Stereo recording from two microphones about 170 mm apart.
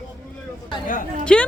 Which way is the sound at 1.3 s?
5° left (ahead or behind).